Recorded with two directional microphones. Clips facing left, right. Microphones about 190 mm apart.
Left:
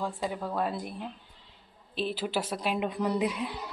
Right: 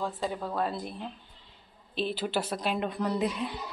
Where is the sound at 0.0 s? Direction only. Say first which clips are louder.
Even; 10° left (ahead or behind).